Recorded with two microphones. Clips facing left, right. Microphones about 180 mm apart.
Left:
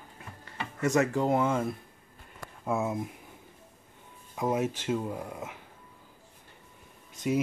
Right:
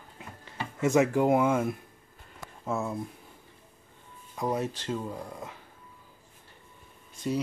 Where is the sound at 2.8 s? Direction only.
15° left (ahead or behind).